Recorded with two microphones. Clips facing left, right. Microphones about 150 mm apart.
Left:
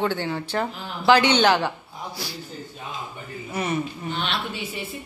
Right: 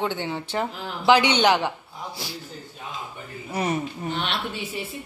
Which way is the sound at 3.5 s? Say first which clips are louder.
Right 1 dB; 35° right (ahead or behind).